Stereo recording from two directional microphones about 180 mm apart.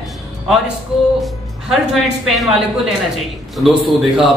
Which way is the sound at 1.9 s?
Centre (ahead or behind).